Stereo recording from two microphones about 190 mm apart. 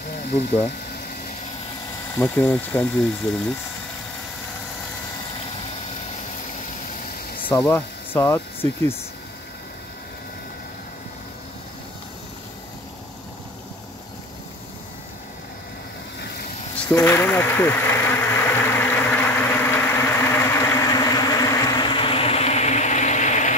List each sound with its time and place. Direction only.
2.1 s speech: 10° left (ahead or behind)
7.4 s speech: 15° left (ahead or behind)
16.7 s bee: 10° left (ahead or behind); by 23.5 s 40° left (ahead or behind)